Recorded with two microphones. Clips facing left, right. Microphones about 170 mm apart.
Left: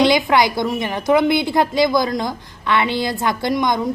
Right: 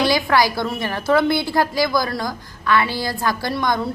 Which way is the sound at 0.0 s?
20° left (ahead or behind).